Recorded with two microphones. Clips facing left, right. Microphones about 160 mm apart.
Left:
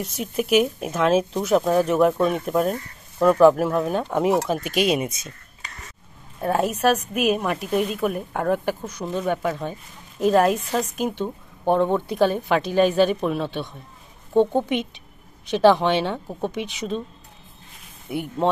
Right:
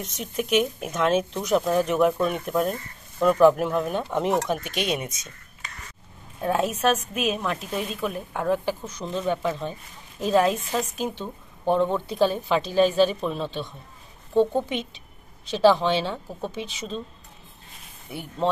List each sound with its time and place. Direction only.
0.0 s speech: 5° left (ahead or behind)
6.4 s speech: 10° left (ahead or behind)
18.1 s speech: 10° left (ahead or behind)